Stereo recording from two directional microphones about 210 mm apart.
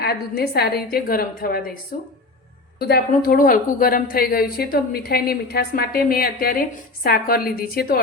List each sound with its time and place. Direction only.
0.0 s a woman's voice: 50° left (ahead or behind)